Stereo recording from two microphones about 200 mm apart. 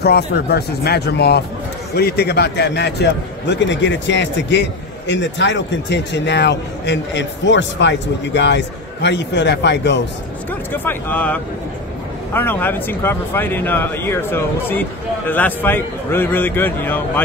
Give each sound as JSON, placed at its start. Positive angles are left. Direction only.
{"t": 0.0, "sound": "a man's voice", "side_deg": 55}
{"t": 10.7, "sound": "speech", "side_deg": 10}